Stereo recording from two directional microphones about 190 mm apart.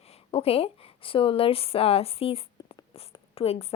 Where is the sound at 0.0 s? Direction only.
30° left (ahead or behind).